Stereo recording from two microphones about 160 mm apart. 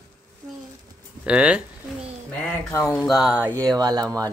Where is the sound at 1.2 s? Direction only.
5° right (ahead or behind).